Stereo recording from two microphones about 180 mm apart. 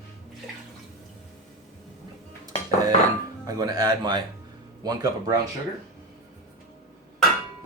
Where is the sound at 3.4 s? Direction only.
20° right (ahead or behind).